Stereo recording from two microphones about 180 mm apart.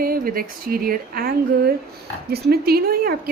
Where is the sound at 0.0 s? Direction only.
55° right (ahead or behind).